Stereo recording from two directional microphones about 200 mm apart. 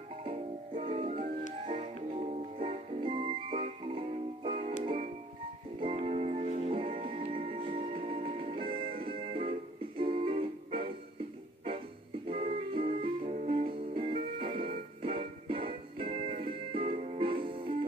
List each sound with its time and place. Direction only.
0.2 s music: 25° right (ahead or behind)
12.3 s music: 30° right (ahead or behind)